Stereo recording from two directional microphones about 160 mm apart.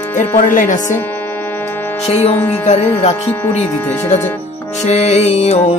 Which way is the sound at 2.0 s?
40° left (ahead or behind).